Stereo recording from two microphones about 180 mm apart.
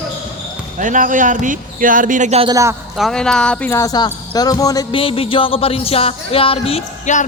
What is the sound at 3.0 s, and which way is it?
Speech, 5° left (ahead or behind).